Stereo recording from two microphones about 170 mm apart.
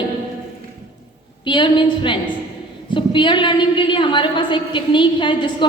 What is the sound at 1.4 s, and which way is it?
A woman's voice, 30° left (ahead or behind).